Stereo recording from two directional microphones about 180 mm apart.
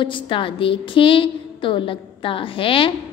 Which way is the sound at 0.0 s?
30° left (ahead or behind).